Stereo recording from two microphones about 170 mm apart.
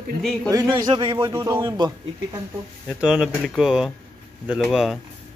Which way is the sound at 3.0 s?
5° right (ahead or behind).